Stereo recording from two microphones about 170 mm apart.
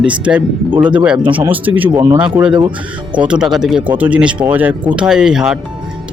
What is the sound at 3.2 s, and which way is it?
Speech, 5° right (ahead or behind).